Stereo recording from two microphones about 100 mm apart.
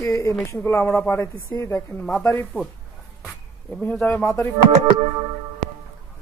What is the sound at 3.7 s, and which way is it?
Speech, 5° left (ahead or behind).